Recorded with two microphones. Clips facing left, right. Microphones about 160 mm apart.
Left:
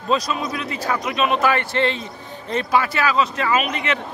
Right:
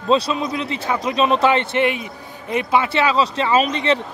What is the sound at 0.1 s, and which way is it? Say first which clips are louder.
A man's voice: right 4 dB; 30° right (ahead or behind).